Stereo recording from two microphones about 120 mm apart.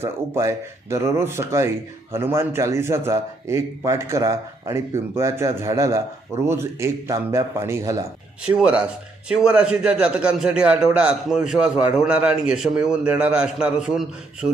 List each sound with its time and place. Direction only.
0.0 s a man's voice: 25° right (ahead or behind)
8.4 s a man's voice: 10° right (ahead or behind)